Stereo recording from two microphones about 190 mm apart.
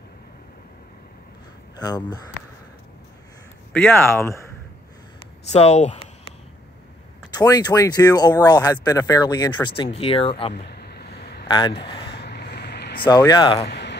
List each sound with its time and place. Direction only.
1.8 s speech: 20° left (ahead or behind)
3.7 s speech: 5° left (ahead or behind)
5.5 s speech: 35° left (ahead or behind)
7.3 s speech: 20° left (ahead or behind)
10.5 s a sound: 60° left (ahead or behind)
11.4 s speech: 25° left (ahead or behind)
12.2 s vehicle: 60° left (ahead or behind)
13.0 s speech: 20° left (ahead or behind)
13.7 s a sound: 65° left (ahead or behind)